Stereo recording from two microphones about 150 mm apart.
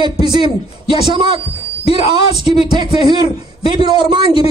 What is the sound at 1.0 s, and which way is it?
Speech, 30° right (ahead or behind).